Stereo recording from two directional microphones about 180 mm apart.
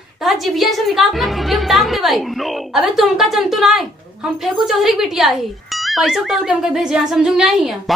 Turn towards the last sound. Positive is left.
turn(degrees=0)  # may be behind; listen again after turning